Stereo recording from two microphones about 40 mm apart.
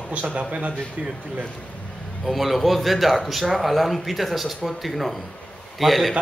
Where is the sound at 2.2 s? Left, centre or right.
Centre.